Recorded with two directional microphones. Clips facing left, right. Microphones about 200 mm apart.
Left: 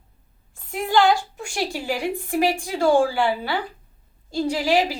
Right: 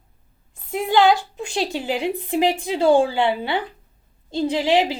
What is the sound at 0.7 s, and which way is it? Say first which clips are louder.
A woman's voice: right 2 dB; 20° right (ahead or behind).